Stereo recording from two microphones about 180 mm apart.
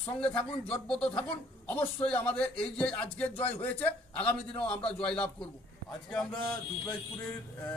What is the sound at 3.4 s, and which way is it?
Speech, 35° left (ahead or behind).